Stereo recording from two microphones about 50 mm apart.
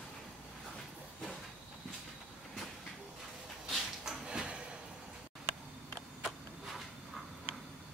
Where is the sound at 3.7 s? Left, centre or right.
Centre.